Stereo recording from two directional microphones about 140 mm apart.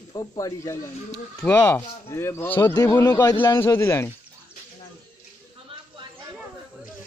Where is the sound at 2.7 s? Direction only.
25° left (ahead or behind).